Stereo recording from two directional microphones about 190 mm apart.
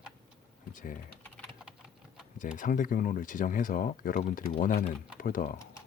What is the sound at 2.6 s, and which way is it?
Speech, 45° left (ahead or behind).